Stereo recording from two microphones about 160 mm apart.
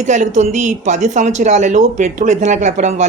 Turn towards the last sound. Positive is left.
turn(degrees=-50)  # may be behind; listen again after turning